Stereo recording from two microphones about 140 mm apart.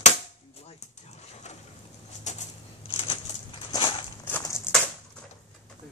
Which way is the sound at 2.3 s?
55° left (ahead or behind).